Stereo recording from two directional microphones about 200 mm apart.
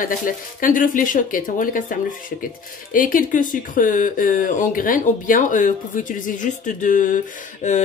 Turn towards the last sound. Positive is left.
turn(degrees=40)  # may be behind; listen again after turning